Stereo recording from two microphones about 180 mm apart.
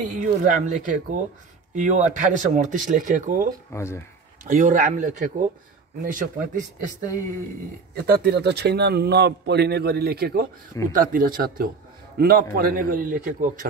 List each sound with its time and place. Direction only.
0.0 s speech: 45° right (ahead or behind)
3.7 s speech: 15° left (ahead or behind)
4.5 s speech: 45° right (ahead or behind)
7.9 s a man's voice: 60° right (ahead or behind)